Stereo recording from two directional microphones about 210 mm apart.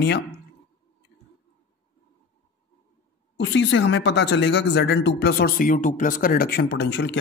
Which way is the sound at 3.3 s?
60° left (ahead or behind).